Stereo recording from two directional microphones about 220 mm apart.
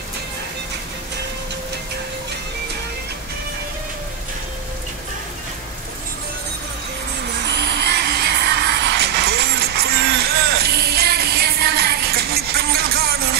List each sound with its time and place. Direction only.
7.3 s music: 50° right (ahead or behind)